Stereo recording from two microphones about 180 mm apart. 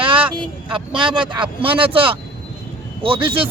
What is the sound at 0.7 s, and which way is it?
Speech, 25° right (ahead or behind).